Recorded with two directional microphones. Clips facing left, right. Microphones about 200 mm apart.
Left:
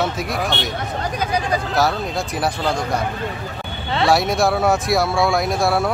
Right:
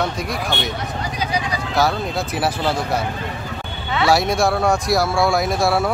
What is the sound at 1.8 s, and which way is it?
Speech, centre (ahead or behind).